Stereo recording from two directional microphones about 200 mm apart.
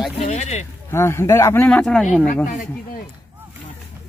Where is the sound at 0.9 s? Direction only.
10° left (ahead or behind).